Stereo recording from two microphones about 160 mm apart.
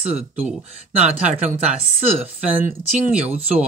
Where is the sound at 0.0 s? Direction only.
40° right (ahead or behind).